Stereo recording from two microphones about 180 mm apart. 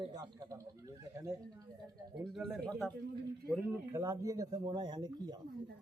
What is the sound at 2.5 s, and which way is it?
Speech, centre (ahead or behind).